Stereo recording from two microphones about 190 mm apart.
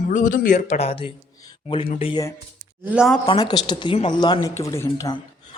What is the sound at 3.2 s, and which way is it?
Speech, 25° left (ahead or behind).